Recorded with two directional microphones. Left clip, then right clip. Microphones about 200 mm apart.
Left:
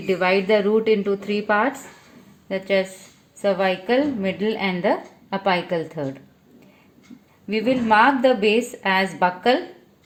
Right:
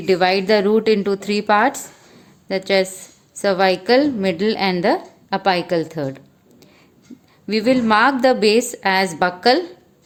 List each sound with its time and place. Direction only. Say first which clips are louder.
0.0 s a woman's voice: right 3 dB; 45° right (ahead or behind)
7.4 s a woman's voice: right 4 dB; 45° right (ahead or behind)